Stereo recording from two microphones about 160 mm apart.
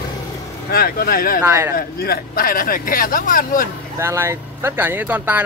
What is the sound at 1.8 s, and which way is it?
Speech, 70° left (ahead or behind).